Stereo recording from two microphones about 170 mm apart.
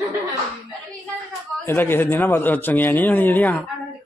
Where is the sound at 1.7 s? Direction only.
15° left (ahead or behind).